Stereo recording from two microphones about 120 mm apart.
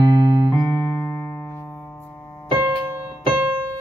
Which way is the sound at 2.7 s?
15° right (ahead or behind).